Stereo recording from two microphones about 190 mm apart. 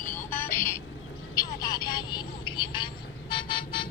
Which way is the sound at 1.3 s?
20° left (ahead or behind).